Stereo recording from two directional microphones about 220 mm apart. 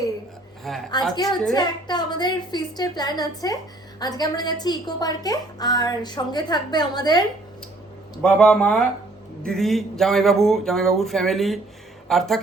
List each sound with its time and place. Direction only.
0.7 s speech: centre (ahead or behind)
1.1 s a woman's voice: 20° left (ahead or behind)
8.2 s speech: 5° left (ahead or behind)